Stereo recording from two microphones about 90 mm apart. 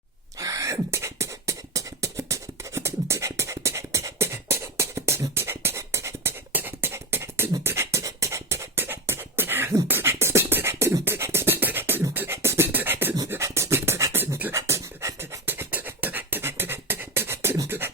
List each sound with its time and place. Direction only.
0.3 s beatboxing: 40° right (ahead or behind)
13.2 s a sound: 30° right (ahead or behind)
14.5 s beatboxing: 35° right (ahead or behind)
15.4 s beatboxing: 20° right (ahead or behind)